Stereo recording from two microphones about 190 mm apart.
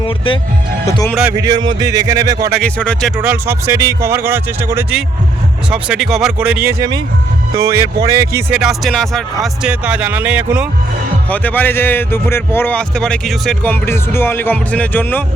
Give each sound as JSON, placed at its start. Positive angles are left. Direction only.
{"t": 0.9, "sound": "speech", "side_deg": 15}
{"t": 1.4, "sound": "speech", "side_deg": -20}
{"t": 2.6, "sound": "speech", "side_deg": 5}
{"t": 3.2, "sound": "speech", "side_deg": -10}
{"t": 11.3, "sound": "speech", "side_deg": 10}